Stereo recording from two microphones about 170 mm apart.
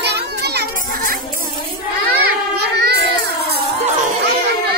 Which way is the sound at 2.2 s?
75° right (ahead or behind).